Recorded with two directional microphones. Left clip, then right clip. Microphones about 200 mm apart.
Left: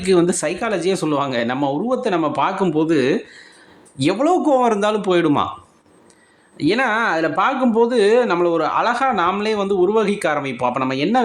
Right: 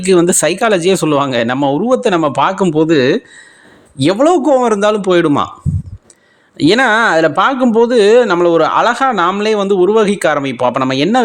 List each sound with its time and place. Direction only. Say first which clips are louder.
0.0 s speech: right 6 dB; 30° right (ahead or behind)
6.6 s speech: right 8 dB; 40° right (ahead or behind)